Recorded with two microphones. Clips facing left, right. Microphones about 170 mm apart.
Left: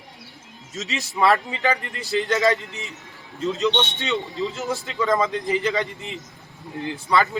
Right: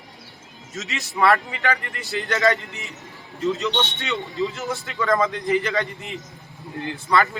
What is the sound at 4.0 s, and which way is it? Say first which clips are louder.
Speech: even; 25° left (ahead or behind).